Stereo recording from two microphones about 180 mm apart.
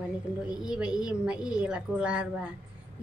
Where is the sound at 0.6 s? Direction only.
5° right (ahead or behind).